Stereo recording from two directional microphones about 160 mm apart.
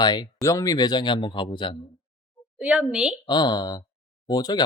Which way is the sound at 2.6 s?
10° right (ahead or behind).